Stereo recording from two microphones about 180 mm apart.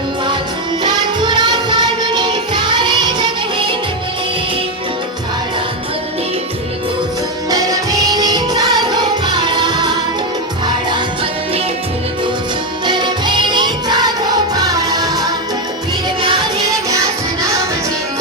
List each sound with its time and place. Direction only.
0.9 s music: 25° right (ahead or behind)
7.5 s music: 20° right (ahead or behind)
12.8 s music: 25° right (ahead or behind)